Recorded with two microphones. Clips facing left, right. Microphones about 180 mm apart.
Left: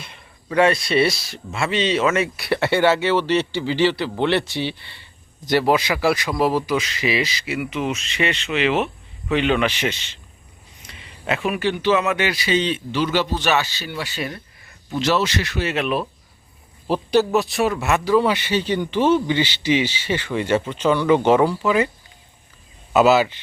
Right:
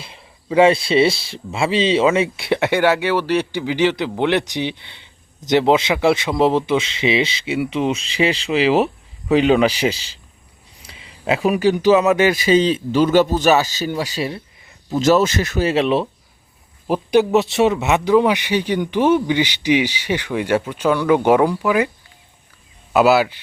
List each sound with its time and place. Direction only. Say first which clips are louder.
0.0 s speech: right 2 dB; 30° right (ahead or behind)
14.8 s speech: right 6 dB; 40° right (ahead or behind)
16.8 s speech: right 2 dB; 15° right (ahead or behind)
22.9 s speech: right 1 dB; 10° right (ahead or behind)